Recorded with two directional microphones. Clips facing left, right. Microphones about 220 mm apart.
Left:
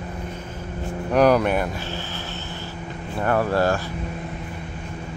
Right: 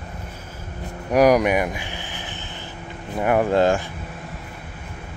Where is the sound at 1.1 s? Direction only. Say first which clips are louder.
Right 1 dB; 10° right (ahead or behind).